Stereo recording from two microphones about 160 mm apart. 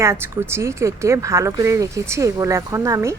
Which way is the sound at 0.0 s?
15° right (ahead or behind).